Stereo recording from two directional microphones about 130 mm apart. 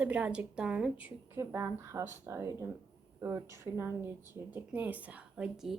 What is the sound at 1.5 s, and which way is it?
Speech, 20° right (ahead or behind).